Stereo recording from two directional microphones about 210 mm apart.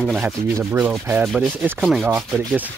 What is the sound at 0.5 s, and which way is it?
Rub, 10° right (ahead or behind).